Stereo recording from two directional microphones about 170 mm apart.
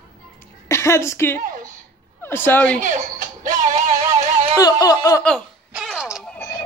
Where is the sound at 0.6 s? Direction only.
15° left (ahead or behind).